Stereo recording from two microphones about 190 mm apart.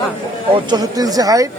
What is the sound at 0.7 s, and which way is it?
Speech, 20° right (ahead or behind).